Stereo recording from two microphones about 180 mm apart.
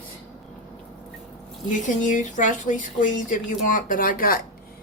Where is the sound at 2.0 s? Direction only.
45° left (ahead or behind).